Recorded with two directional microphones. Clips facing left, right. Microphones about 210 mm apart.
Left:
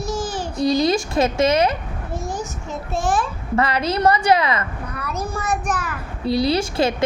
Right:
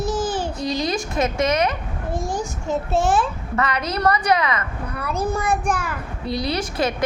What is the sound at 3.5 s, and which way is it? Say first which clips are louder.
A woman's voice: left 4 dB; 30° left (ahead or behind).